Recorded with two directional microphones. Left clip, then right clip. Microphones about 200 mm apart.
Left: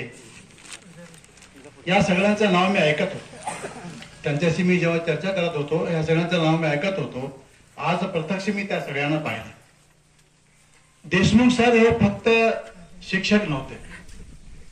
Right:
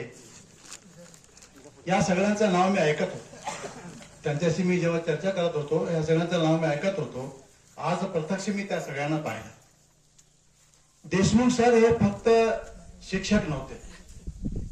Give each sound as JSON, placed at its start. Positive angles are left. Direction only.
{"t": 0.3, "sound": "a sound", "side_deg": -45}
{"t": 1.9, "sound": "a man's voice", "side_deg": -65}
{"t": 4.2, "sound": "a man's voice", "side_deg": -65}
{"t": 11.1, "sound": "a man's voice", "side_deg": -65}